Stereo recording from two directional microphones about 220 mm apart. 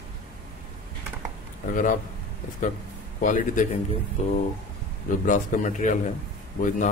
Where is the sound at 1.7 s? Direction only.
35° left (ahead or behind).